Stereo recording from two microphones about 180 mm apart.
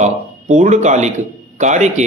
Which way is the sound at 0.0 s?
40° right (ahead or behind).